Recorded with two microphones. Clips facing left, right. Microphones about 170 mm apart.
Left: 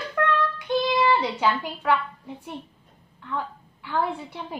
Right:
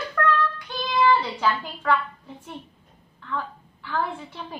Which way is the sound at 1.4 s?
10° left (ahead or behind).